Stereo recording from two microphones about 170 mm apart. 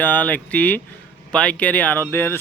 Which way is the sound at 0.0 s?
10° left (ahead or behind).